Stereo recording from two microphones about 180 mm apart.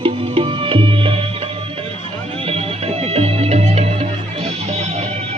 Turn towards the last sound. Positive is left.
turn(degrees=-35)  # may be behind; listen again after turning